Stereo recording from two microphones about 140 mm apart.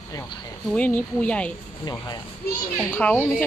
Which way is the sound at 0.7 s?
10° left (ahead or behind).